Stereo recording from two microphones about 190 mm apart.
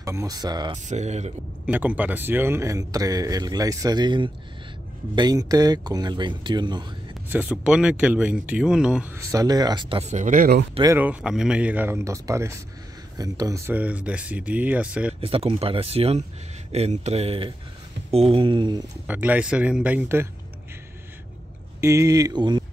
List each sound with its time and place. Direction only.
0.0 s speech: 15° right (ahead or behind)
0.8 s speech: 35° right (ahead or behind)
1.7 s speech: 10° right (ahead or behind)
7.2 s speech: 10° right (ahead or behind); by 10.6 s 45° right (ahead or behind)
10.7 s speech: 20° right (ahead or behind)
11.0 s speech: 5° right (ahead or behind)
15.1 s speech: 30° right (ahead or behind)
19.0 s speech: 10° right (ahead or behind)
21.8 s speech: 15° right (ahead or behind)